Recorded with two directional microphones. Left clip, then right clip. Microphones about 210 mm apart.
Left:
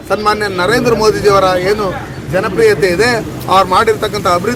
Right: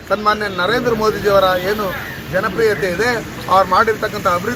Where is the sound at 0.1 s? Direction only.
25° left (ahead or behind).